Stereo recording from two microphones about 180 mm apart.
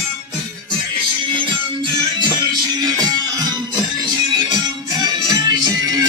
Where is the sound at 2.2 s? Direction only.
20° right (ahead or behind).